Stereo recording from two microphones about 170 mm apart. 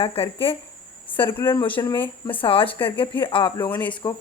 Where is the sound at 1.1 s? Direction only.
10° left (ahead or behind).